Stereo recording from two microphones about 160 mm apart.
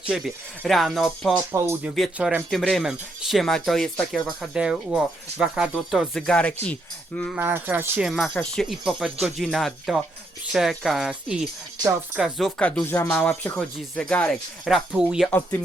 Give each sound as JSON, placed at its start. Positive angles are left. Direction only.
{"t": 0.1, "sound": "speech", "side_deg": 0}
{"t": 1.5, "sound": "speech", "side_deg": -15}
{"t": 2.0, "sound": "speech", "side_deg": -5}
{"t": 7.3, "sound": "speech", "side_deg": -10}
{"t": 15.3, "sound": "speech", "side_deg": 10}